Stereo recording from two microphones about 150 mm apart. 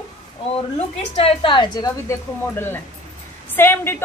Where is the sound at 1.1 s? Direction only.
40° left (ahead or behind).